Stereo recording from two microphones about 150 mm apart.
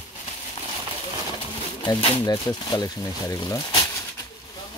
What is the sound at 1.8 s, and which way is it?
Speech, 35° left (ahead or behind).